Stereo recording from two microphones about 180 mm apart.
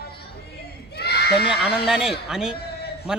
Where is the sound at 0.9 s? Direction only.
65° left (ahead or behind).